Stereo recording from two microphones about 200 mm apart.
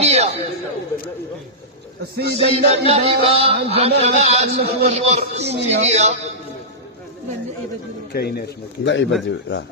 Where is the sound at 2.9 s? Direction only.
30° right (ahead or behind).